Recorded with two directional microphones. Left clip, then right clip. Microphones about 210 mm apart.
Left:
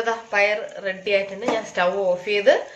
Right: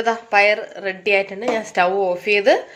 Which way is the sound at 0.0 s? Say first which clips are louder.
Right 5 dB; 45° right (ahead or behind).